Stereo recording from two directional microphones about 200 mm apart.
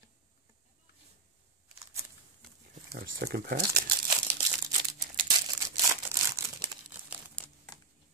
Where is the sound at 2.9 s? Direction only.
50° right (ahead or behind).